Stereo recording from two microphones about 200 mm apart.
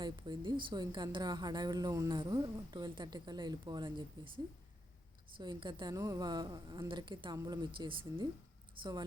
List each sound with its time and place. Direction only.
0.0 s a woman's voice: 20° right (ahead or behind)
5.4 s a woman's voice: 20° right (ahead or behind)